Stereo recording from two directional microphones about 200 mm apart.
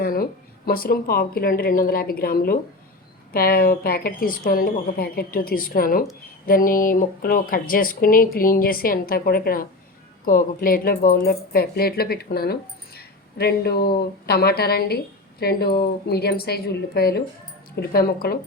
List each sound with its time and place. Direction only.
0.0 s speech: 45° left (ahead or behind)